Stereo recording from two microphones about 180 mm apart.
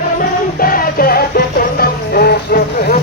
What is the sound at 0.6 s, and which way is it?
Music, 50° left (ahead or behind).